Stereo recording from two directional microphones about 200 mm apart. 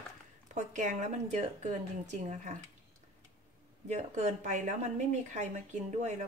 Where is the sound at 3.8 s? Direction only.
35° right (ahead or behind).